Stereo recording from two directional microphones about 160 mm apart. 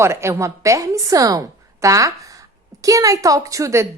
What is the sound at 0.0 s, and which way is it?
A woman's voice, 15° right (ahead or behind).